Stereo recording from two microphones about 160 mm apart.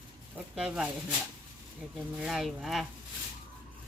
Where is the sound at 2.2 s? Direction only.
Centre (ahead or behind).